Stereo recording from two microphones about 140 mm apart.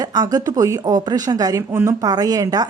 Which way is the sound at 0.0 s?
25° right (ahead or behind).